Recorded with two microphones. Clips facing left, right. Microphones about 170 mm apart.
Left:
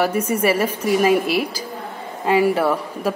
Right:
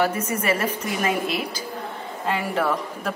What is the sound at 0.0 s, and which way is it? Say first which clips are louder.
Speech: left 4 dB; 10° left (ahead or behind).